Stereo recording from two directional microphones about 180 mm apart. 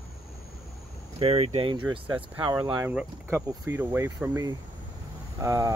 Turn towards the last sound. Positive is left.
turn(degrees=-20)  # may be behind; listen again after turning